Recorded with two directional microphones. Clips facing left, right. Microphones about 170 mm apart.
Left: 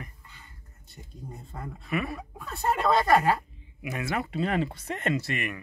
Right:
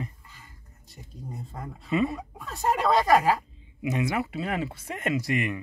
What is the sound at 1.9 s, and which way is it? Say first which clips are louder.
Speech: right 5 dB; 20° right (ahead or behind).